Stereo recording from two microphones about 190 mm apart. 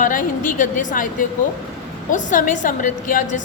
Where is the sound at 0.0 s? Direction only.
45° left (ahead or behind).